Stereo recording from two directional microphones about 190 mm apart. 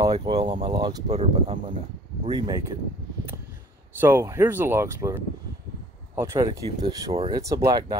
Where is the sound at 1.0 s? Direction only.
35° right (ahead or behind).